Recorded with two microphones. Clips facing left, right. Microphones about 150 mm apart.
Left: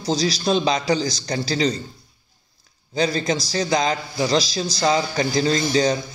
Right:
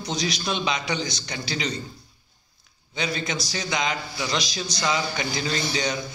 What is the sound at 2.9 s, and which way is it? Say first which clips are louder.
A man's voice: left 7 dB; 35° left (ahead or behind).